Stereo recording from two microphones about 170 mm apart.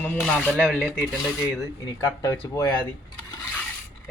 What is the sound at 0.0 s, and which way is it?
Speech, 5° left (ahead or behind).